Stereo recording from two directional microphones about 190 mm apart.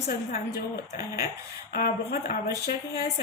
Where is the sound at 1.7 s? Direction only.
50° left (ahead or behind).